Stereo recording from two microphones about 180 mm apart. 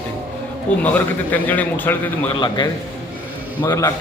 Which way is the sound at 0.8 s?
10° left (ahead or behind).